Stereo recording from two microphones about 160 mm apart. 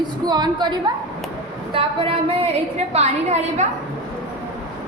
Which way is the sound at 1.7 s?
35° right (ahead or behind).